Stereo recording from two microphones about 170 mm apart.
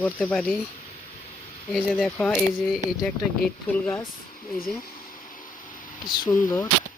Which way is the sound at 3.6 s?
15° left (ahead or behind).